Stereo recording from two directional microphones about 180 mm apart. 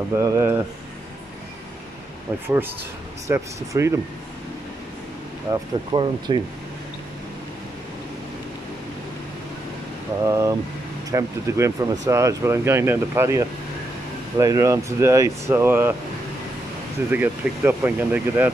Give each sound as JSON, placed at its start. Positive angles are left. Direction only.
{"t": 0.1, "sound": "speech", "side_deg": -15}
{"t": 2.4, "sound": "speech", "side_deg": -10}
{"t": 5.5, "sound": "speech", "side_deg": -25}
{"t": 10.2, "sound": "speech", "side_deg": -15}
{"t": 17.1, "sound": "speech", "side_deg": -10}